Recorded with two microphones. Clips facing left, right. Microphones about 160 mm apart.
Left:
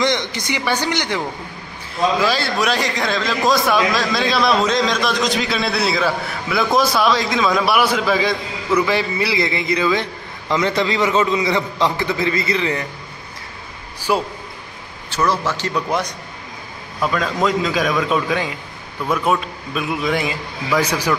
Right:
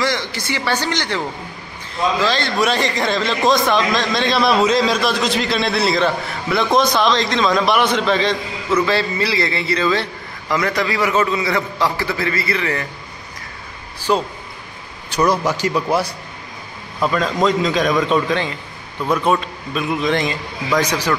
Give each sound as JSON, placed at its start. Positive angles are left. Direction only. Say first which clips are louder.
{"t": 0.0, "sound": "a man's voice", "louder": "left 2 dB", "side_deg": 20}
{"t": 10.5, "sound": "a man's voice", "louder": "left 1 dB", "side_deg": 25}
{"t": 14.1, "sound": "a man's voice", "louder": "right 1 dB", "side_deg": 10}
{"t": 15.0, "sound": "a man's voice", "louder": "right 3 dB", "side_deg": -15}